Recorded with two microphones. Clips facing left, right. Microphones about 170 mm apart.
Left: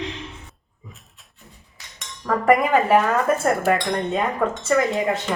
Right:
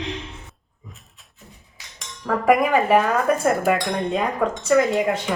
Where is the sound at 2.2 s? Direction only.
Centre (ahead or behind).